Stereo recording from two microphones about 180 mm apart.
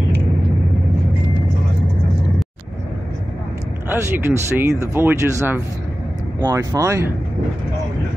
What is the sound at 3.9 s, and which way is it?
Speech, 10° right (ahead or behind).